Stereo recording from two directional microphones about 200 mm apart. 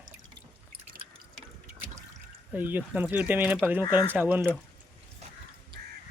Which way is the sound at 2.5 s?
10° right (ahead or behind).